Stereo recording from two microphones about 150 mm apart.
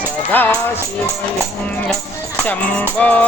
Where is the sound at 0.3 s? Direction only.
10° left (ahead or behind).